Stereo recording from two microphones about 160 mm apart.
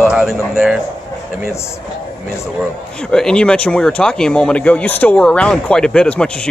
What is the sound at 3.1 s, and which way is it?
Speech, 5° left (ahead or behind).